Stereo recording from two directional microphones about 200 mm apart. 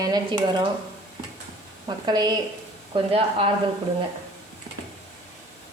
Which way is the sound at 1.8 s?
20° right (ahead or behind).